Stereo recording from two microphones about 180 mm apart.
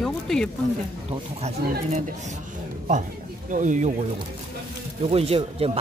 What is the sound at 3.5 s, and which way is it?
Speech, 45° right (ahead or behind).